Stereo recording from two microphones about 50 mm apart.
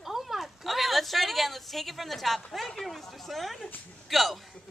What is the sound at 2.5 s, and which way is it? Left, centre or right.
Speech, centre.